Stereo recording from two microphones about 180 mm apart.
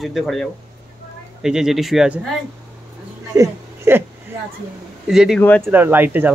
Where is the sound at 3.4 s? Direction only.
15° right (ahead or behind).